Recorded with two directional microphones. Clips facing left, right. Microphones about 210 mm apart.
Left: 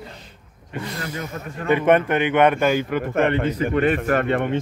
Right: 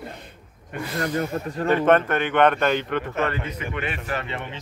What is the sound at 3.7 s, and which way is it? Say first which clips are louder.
Speech: left 10 dB; 45° left (ahead or behind).